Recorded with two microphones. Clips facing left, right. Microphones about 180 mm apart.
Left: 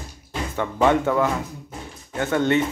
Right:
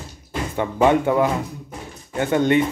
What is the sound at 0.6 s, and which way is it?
Speech, 15° right (ahead or behind).